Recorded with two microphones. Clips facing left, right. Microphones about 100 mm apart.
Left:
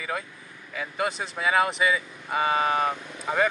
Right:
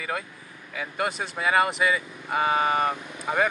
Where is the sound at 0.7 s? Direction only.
Centre (ahead or behind).